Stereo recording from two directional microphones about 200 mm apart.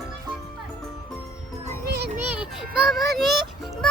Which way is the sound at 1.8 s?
50° right (ahead or behind).